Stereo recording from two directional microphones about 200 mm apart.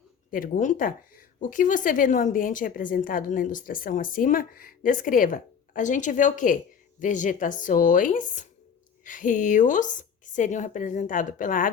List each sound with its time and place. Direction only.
0.3 s speech: 45° left (ahead or behind)